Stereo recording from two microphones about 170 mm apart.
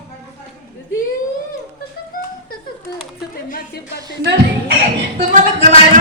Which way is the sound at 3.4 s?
55° left (ahead or behind).